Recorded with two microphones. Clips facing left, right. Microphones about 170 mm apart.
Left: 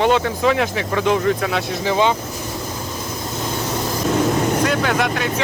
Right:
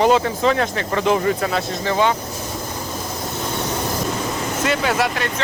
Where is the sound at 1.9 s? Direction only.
20° left (ahead or behind).